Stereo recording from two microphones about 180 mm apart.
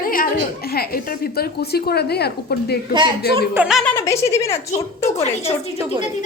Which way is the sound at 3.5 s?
Centre (ahead or behind).